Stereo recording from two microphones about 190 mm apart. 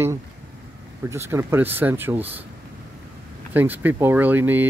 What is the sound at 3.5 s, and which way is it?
Speech, 10° right (ahead or behind).